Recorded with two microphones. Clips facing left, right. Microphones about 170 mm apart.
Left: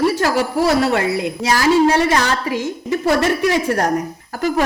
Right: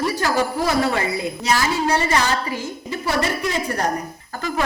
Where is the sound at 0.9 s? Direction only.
65° left (ahead or behind).